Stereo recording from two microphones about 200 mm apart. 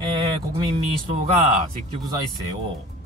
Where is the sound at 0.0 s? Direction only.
20° right (ahead or behind).